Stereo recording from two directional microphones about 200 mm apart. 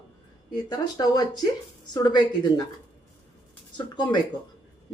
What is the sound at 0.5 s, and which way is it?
Speech, 20° left (ahead or behind).